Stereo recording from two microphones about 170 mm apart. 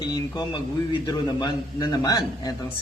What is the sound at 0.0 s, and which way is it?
A man's voice, 25° left (ahead or behind).